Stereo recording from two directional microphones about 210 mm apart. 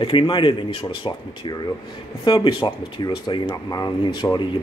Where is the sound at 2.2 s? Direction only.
25° left (ahead or behind).